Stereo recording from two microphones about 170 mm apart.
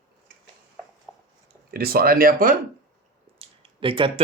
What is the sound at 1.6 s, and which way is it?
Speech, 60° right (ahead or behind).